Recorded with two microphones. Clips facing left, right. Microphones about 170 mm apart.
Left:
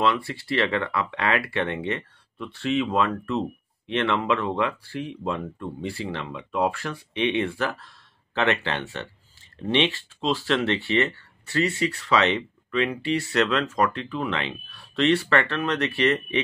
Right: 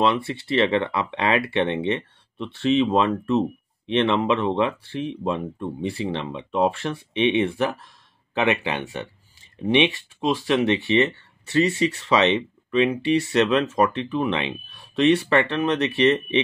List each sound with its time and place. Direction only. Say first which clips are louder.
0.0 s speech: right 3 dB; 20° right (ahead or behind)